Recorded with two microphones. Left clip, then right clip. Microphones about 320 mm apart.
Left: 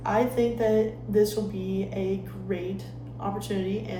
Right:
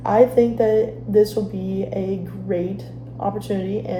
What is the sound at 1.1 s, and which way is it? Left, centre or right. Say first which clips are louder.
Speech: right 7 dB; centre.